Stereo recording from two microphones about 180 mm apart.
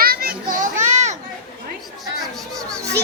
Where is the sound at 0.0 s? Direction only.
55° right (ahead or behind); by 1.1 s 40° right (ahead or behind).